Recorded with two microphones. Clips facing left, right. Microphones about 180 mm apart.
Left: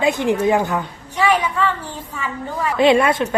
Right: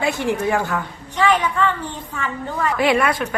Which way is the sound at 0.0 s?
20° left (ahead or behind).